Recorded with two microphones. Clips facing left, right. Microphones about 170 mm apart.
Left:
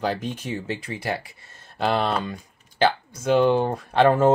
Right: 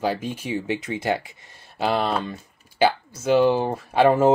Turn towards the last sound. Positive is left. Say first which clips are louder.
# right 1 dB
turn(degrees=-5)  # may be behind; listen again after turning